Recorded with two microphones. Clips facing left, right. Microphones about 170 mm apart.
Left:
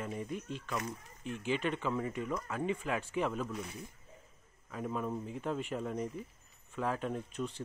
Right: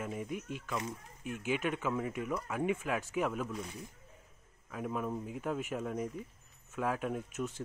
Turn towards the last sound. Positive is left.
turn(degrees=-5)  # may be behind; listen again after turning